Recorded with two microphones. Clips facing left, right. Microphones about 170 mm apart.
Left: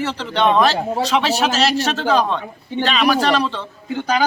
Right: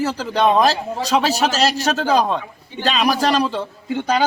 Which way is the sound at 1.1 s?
40° right (ahead or behind).